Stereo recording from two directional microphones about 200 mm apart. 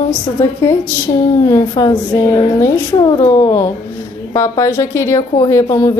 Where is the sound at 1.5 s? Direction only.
20° left (ahead or behind).